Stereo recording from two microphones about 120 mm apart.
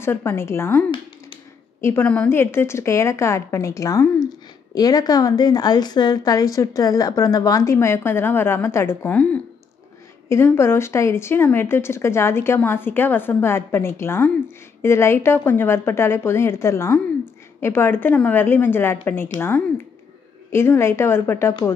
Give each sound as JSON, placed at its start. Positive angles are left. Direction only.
{"t": 0.0, "sound": "a woman's voice", "side_deg": 20}